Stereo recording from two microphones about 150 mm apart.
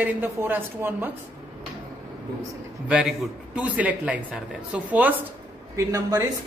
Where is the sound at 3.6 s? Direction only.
10° right (ahead or behind).